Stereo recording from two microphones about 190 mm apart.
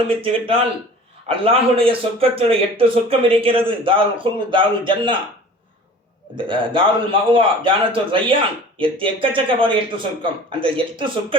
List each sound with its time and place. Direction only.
0.2 s a man's voice: 30° right (ahead or behind)
6.3 s a man's voice: 25° right (ahead or behind)